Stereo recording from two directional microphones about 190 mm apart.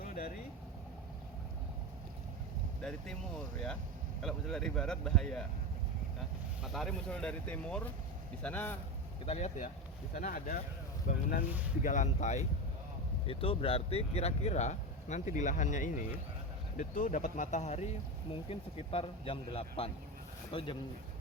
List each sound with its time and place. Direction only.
0.0 s vehicle: 50° left (ahead or behind)
2.8 s speech: 5° left (ahead or behind)
6.6 s speech: centre (ahead or behind)
9.2 s speech: 35° left (ahead or behind)
10.2 s speech: 50° left (ahead or behind); by 20.7 s 25° left (ahead or behind)